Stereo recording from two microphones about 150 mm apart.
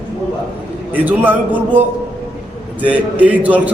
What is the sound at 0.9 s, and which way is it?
Speech, 10° right (ahead or behind).